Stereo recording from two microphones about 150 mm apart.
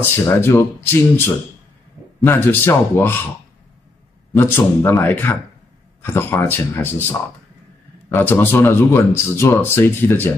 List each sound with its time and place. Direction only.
0.0 s speech: 15° left (ahead or behind)
4.3 s speech: 15° left (ahead or behind)